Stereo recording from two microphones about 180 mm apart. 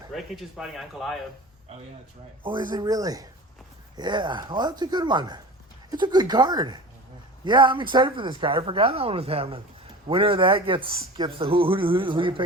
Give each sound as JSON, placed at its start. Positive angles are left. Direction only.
{"t": 0.1, "sound": "speech", "side_deg": 0}
{"t": 2.4, "sound": "speech", "side_deg": -25}